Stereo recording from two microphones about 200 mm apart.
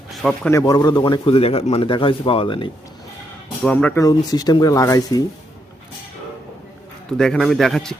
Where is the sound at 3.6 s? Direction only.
10° left (ahead or behind).